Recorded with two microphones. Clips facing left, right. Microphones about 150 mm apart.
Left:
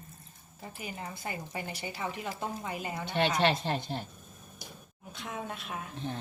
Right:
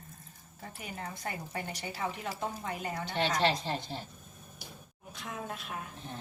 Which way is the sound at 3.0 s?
60° left (ahead or behind).